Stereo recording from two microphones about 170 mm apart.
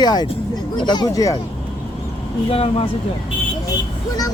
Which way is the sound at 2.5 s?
35° left (ahead or behind).